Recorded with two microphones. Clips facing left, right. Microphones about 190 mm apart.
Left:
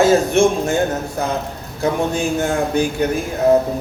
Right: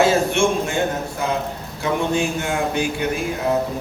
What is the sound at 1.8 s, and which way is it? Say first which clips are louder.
A man's voice: left 2 dB; 40° left (ahead or behind).